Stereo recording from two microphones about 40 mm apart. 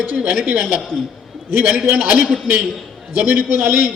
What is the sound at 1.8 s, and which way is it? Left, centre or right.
A woman's voice, right.